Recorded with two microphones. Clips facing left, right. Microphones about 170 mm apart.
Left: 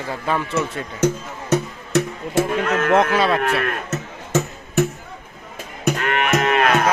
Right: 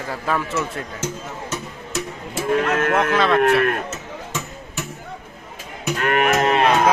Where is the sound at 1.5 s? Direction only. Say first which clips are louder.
Left 10 dB; 65° left (ahead or behind).